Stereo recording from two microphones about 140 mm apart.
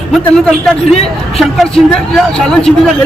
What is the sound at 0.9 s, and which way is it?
Speech, 45° left (ahead or behind).